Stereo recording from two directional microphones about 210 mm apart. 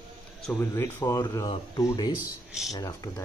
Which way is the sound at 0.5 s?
10° left (ahead or behind).